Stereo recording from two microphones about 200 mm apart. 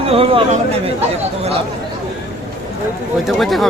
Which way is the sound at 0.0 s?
30° right (ahead or behind).